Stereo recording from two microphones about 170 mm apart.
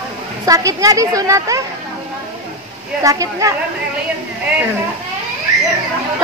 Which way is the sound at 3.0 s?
20° right (ahead or behind).